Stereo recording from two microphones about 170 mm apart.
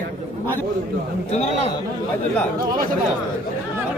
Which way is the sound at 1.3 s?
40° left (ahead or behind).